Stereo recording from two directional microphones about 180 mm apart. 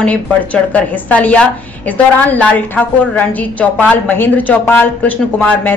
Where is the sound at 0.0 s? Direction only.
10° left (ahead or behind).